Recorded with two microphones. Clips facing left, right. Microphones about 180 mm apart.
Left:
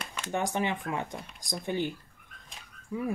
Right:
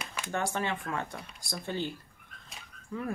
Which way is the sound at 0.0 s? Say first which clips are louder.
Even; 10° right (ahead or behind).